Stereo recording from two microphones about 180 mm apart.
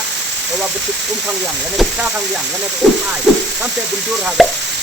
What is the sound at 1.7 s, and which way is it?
Frying, centre (ahead or behind).